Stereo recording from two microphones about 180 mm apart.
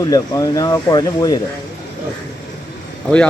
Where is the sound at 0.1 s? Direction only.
20° left (ahead or behind).